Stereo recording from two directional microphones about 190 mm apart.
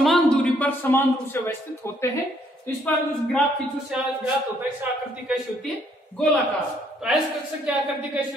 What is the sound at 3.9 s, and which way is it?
A man's voice, 5° right (ahead or behind).